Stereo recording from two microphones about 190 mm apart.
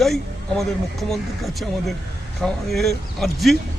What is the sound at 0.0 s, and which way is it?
Speech, centre (ahead or behind).